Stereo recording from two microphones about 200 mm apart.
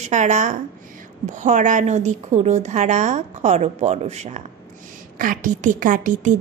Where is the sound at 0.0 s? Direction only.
35° right (ahead or behind).